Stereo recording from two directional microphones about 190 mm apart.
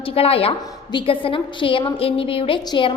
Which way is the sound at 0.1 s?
30° left (ahead or behind).